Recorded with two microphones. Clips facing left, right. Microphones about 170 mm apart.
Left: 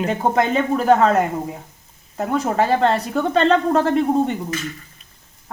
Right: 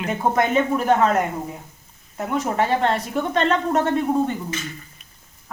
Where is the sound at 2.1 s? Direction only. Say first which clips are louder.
Left 3 dB; 35° left (ahead or behind).